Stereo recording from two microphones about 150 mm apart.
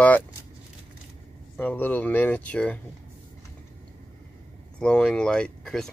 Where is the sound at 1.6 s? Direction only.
10° left (ahead or behind).